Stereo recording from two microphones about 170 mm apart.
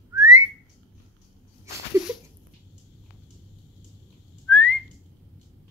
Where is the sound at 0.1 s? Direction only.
20° right (ahead or behind).